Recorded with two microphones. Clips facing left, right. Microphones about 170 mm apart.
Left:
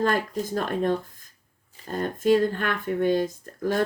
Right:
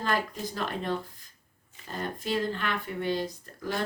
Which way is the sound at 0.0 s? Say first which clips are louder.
Left 6 dB; 50° left (ahead or behind).